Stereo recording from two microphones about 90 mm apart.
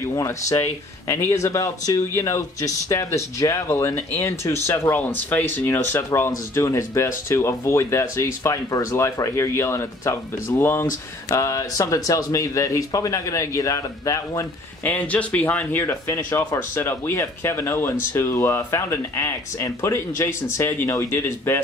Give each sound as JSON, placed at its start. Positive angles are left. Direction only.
{"t": 0.1, "sound": "speech", "side_deg": 40}
{"t": 11.2, "sound": "speech", "side_deg": 35}
{"t": 14.9, "sound": "speech", "side_deg": 15}